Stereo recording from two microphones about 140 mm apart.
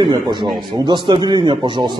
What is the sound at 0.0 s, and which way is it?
A man's voice, 35° right (ahead or behind).